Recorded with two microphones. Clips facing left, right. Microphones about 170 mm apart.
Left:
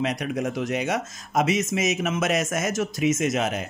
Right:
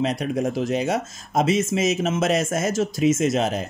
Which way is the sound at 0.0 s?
30° right (ahead or behind).